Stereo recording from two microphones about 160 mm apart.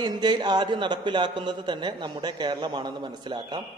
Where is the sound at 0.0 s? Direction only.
25° right (ahead or behind).